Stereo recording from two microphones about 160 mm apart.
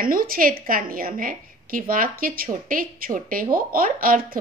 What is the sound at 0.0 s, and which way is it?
A woman's voice, 60° right (ahead or behind).